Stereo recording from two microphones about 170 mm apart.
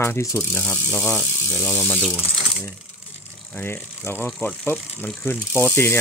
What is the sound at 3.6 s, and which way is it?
Speech, 10° left (ahead or behind).